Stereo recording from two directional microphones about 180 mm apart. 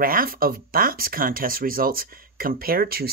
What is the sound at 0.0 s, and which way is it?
Speech, 55° right (ahead or behind).